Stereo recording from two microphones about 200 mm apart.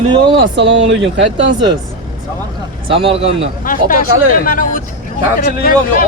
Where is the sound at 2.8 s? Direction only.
30° right (ahead or behind).